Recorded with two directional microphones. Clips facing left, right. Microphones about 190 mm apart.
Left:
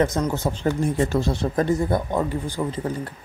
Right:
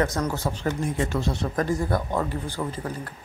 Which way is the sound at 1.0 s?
35° left (ahead or behind).